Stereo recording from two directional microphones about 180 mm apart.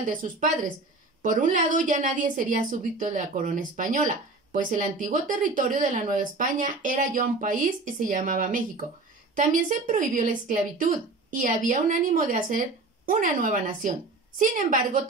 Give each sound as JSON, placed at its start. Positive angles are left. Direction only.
{"t": 0.0, "sound": "a woman's voice", "side_deg": -50}